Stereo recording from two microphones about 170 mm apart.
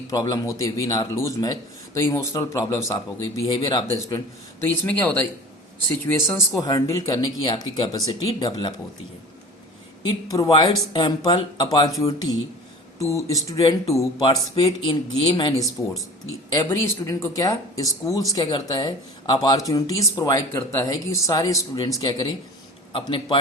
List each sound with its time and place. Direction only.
0.1 s speech: 25° left (ahead or behind)
4.6 s speech: 10° left (ahead or behind)
10.0 s speech: 20° left (ahead or behind)
14.3 s a man's voice: 30° left (ahead or behind)